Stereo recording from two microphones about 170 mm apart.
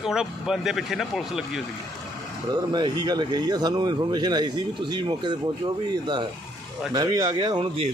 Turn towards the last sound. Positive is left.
turn(degrees=-25)  # may be behind; listen again after turning